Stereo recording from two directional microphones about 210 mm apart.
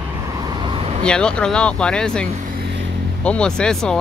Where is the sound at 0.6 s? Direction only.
25° right (ahead or behind).